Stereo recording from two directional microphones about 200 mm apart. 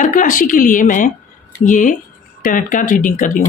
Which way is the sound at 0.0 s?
40° left (ahead or behind).